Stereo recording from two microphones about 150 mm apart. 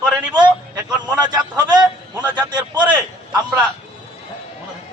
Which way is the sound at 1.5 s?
30° right (ahead or behind).